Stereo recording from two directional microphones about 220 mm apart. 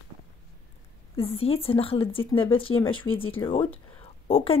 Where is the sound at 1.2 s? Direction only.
25° left (ahead or behind).